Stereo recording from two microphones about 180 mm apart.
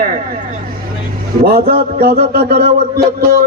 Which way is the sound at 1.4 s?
60° right (ahead or behind).